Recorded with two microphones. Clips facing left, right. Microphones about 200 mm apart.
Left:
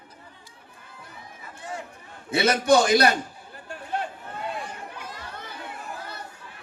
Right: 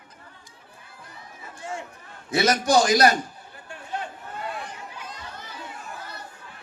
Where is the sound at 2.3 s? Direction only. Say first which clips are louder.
Left 1 dB; 60° left (ahead or behind).